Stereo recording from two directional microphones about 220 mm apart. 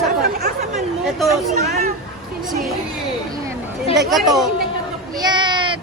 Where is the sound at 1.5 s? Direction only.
30° right (ahead or behind).